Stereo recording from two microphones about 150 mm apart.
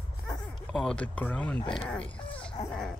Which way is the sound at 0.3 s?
5° left (ahead or behind).